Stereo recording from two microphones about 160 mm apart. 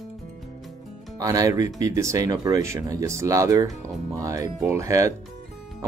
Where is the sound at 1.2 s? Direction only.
20° right (ahead or behind).